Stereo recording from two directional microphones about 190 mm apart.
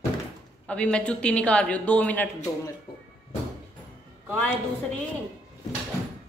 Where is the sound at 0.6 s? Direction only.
5° left (ahead or behind).